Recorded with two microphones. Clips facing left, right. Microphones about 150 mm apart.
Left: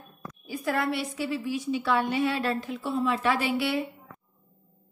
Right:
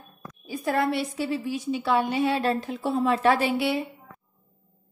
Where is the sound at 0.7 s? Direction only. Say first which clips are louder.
Right 3 dB; 30° right (ahead or behind).